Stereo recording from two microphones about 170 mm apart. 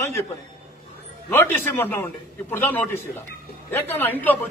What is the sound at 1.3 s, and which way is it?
A man's voice, 10° left (ahead or behind).